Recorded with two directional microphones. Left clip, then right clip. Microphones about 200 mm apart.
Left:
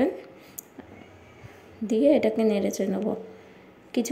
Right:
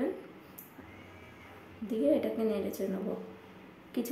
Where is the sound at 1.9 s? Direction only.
35° left (ahead or behind).